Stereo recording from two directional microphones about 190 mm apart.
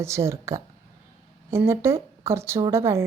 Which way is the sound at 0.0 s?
15° right (ahead or behind).